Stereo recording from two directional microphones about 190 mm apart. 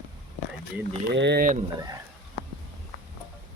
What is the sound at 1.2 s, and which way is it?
Speech, 65° right (ahead or behind).